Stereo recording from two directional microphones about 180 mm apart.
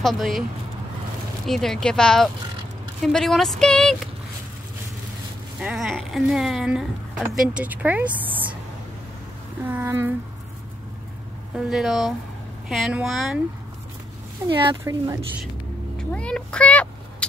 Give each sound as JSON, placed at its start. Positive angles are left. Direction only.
{"t": 0.0, "sound": "speech", "side_deg": 0}
{"t": 1.4, "sound": "speech", "side_deg": 0}
{"t": 5.6, "sound": "speech", "side_deg": -5}
{"t": 9.7, "sound": "speech", "side_deg": -10}
{"t": 11.5, "sound": "speech", "side_deg": 0}
{"t": 14.5, "sound": "speech", "side_deg": -25}
{"t": 16.0, "sound": "vehicle", "side_deg": 5}